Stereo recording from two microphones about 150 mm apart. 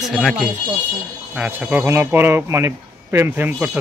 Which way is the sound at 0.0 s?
Centre (ahead or behind).